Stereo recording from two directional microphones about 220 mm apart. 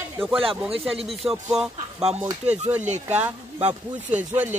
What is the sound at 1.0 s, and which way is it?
Speech, centre (ahead or behind).